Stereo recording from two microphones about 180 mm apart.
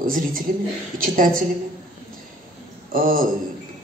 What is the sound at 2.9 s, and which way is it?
Speech, 50° right (ahead or behind).